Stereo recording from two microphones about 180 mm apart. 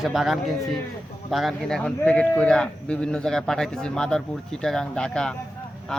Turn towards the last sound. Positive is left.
turn(degrees=5)  # may be behind; listen again after turning